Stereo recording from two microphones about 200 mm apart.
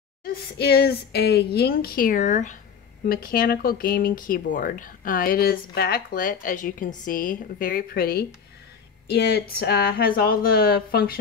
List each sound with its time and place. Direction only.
0.2 s a woman's voice: 50° left (ahead or behind)